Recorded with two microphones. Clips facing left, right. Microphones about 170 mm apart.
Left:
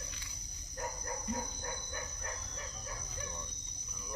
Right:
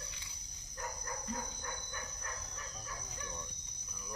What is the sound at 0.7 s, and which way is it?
Dog, 35° left (ahead or behind).